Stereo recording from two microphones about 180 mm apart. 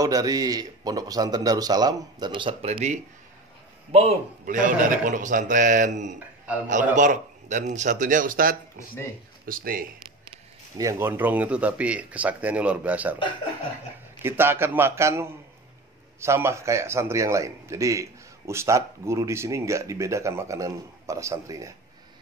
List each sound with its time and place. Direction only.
0.0 s a man's voice: 20° right (ahead or behind); by 6.1 s 40° right (ahead or behind)
6.1 s a sound: 10° right (ahead or behind)
6.7 s a man's voice: 45° right (ahead or behind)
10.8 s speech: 15° right (ahead or behind)
14.2 s speech: 10° right (ahead or behind)